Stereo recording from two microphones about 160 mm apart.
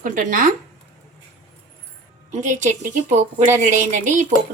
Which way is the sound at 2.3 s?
50° right (ahead or behind).